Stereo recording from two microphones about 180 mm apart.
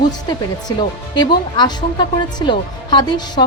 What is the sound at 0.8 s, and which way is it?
Speech, 25° left (ahead or behind).